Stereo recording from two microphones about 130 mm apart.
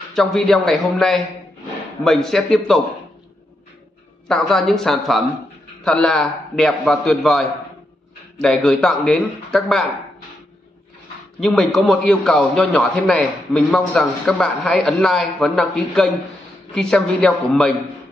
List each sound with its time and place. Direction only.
0.1 s a man's voice: 5° left (ahead or behind)
4.3 s a man's voice: 5° left (ahead or behind)
11.3 s a man's voice: centre (ahead or behind)